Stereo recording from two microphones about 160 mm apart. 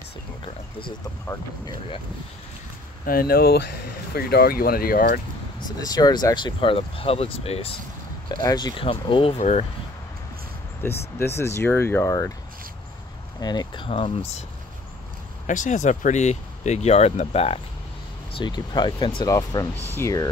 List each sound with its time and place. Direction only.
3.1 s speech: 70° left (ahead or behind)
5.8 s speech: 25° left (ahead or behind)
8.3 s speech: 25° left (ahead or behind); by 9.7 s 45° left (ahead or behind)
10.8 s speech: 15° left (ahead or behind)
13.4 s speech: 25° left (ahead or behind)
15.4 s speech: 50° left (ahead or behind)
18.4 s speech: 30° left (ahead or behind)